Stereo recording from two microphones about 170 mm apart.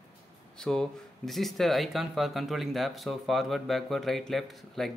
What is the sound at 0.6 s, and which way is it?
Speech, 5° left (ahead or behind).